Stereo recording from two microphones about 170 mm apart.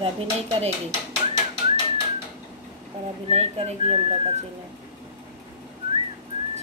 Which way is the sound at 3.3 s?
40° right (ahead or behind).